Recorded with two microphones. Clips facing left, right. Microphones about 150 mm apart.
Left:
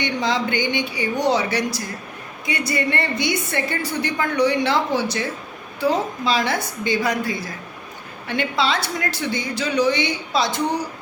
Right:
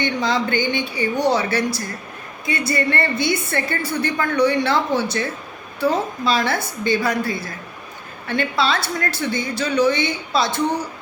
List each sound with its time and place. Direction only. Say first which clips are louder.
0.0 s a woman's voice: right 1 dB; 15° left (ahead or behind)
5.8 s a woman's voice: right 1 dB; 15° left (ahead or behind)